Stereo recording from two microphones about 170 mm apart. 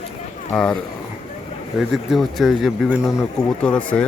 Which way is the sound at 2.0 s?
Centre (ahead or behind).